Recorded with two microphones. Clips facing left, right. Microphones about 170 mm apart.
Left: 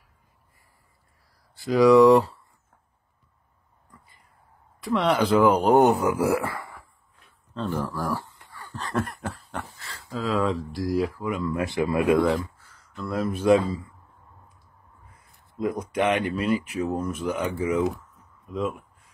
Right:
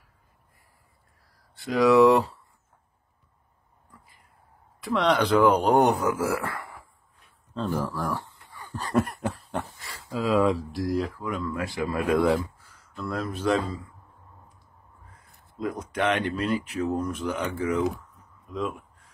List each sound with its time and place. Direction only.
1.5 s speech: centre (ahead or behind)
4.7 s speech: centre (ahead or behind); by 6.6 s 15° left (ahead or behind)
7.5 s speech: 5° right (ahead or behind)
8.4 s a sound: 15° right (ahead or behind)
9.8 s speech: 15° right (ahead or behind)
10.8 s speech: 5° left (ahead or behind)
11.5 s speech: 25° left (ahead or behind)
12.2 s speech: 10° right (ahead or behind); by 13.7 s 10° left (ahead or behind)
15.6 s speech: 10° left (ahead or behind)